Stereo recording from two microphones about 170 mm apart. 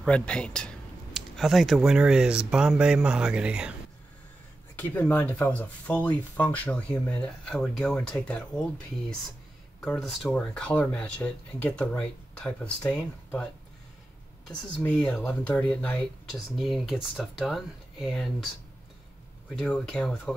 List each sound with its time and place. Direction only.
0.0 s speech: 5° left (ahead or behind)
4.7 s speech: 10° left (ahead or behind)
9.8 s speech: 5° left (ahead or behind)
14.5 s speech: 5° left (ahead or behind)
19.5 s speech: 5° left (ahead or behind)